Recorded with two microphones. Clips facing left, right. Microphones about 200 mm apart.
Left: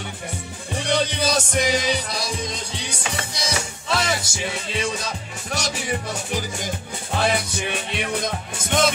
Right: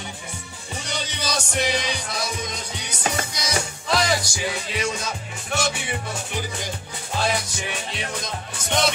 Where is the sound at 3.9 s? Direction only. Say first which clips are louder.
Right 2 dB; 25° left (ahead or behind); by 5.9 s 40° left (ahead or behind).